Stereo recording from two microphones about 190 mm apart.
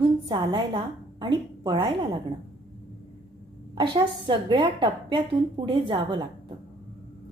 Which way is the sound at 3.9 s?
25° right (ahead or behind).